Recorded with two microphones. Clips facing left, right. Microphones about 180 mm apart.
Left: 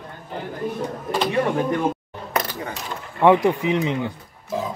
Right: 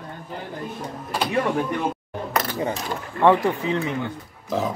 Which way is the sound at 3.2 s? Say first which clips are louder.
Left 2 dB; 15° left (ahead or behind).